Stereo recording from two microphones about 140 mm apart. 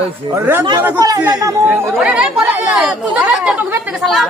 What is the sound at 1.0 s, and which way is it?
Speech, 30° right (ahead or behind).